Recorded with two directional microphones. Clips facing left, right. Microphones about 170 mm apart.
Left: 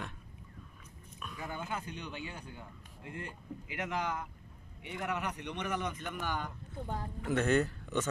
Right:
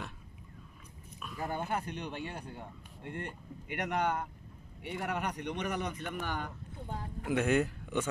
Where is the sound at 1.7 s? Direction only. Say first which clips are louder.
Right 4 dB; 60° right (ahead or behind).